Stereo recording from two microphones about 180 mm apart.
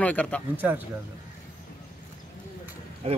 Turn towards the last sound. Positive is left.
turn(degrees=-35)  # may be behind; listen again after turning